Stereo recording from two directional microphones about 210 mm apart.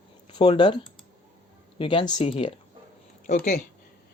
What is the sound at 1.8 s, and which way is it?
Speech, 25° left (ahead or behind).